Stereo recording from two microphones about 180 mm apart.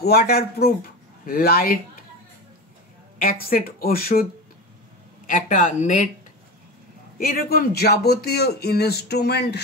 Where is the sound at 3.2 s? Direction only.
55° left (ahead or behind).